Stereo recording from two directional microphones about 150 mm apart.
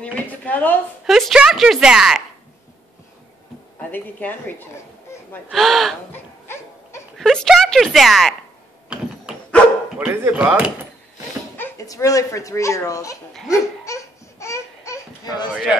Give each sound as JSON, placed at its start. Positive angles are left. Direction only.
{"t": 0.0, "sound": "speech", "side_deg": 10}
{"t": 1.0, "sound": "speech", "side_deg": 0}
{"t": 3.9, "sound": "a woman's voice", "side_deg": 15}
{"t": 5.5, "sound": "speech", "side_deg": 0}
{"t": 6.1, "sound": "a sound", "side_deg": 15}
{"t": 7.2, "sound": "speech", "side_deg": 0}
{"t": 8.8, "sound": "a sound", "side_deg": -5}
{"t": 9.9, "sound": "speech", "side_deg": -10}
{"t": 11.5, "sound": "speech", "side_deg": 15}
{"t": 13.3, "sound": "speech", "side_deg": 0}
{"t": 13.8, "sound": "a sound", "side_deg": 20}
{"t": 15.5, "sound": "speech", "side_deg": -5}